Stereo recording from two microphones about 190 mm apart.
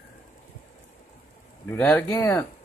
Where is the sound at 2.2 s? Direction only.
20° left (ahead or behind).